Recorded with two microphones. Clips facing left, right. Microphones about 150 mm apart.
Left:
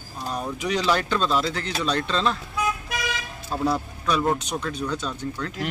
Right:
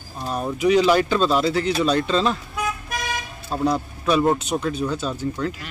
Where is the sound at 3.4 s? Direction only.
15° right (ahead or behind).